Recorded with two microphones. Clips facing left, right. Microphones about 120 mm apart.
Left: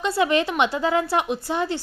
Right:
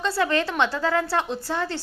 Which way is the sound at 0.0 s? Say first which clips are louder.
Left 2 dB; 15° left (ahead or behind).